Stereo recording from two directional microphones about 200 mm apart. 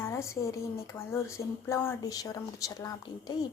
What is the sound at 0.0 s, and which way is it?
Speech, 15° left (ahead or behind).